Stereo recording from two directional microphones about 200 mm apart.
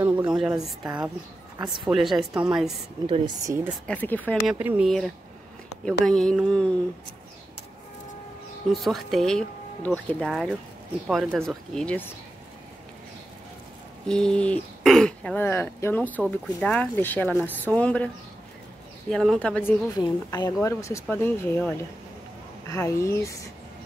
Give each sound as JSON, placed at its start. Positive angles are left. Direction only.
{"t": 0.0, "sound": "a woman's voice", "side_deg": -10}
{"t": 3.1, "sound": "speech", "side_deg": -20}
{"t": 3.8, "sound": "speech", "side_deg": 10}
{"t": 4.5, "sound": "speech", "side_deg": -5}
{"t": 8.6, "sound": "speech", "side_deg": 0}
{"t": 14.0, "sound": "speech", "side_deg": 5}
{"t": 20.0, "sound": "a woman's voice", "side_deg": 20}